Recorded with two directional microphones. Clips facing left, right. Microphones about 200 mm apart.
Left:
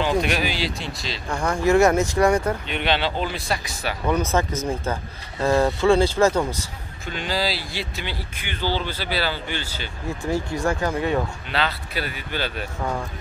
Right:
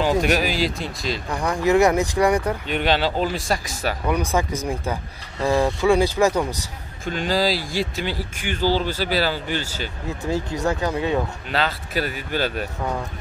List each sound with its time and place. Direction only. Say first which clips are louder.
0.2 s speech: right 3 dB; 40° right (ahead or behind)
1.3 s speech: even; 15° right (ahead or behind)
2.7 s speech: right 5 dB; 40° right (ahead or behind)
4.1 s speech: left 2 dB; 15° right (ahead or behind)
7.1 s speech: right 4 dB; 45° right (ahead or behind)
10.0 s speech: left 1 dB; 20° right (ahead or behind)
11.5 s speech: right 3 dB; 40° right (ahead or behind)